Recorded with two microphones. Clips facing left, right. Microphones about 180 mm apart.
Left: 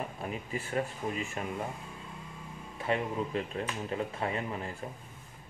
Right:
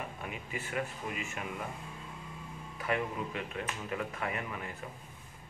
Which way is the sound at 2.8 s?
30° left (ahead or behind).